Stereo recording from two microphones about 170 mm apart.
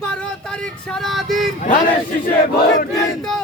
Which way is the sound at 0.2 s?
5° left (ahead or behind).